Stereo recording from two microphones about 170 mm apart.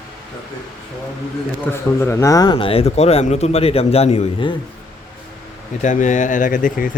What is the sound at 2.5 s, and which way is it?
A man's voice, 35° left (ahead or behind).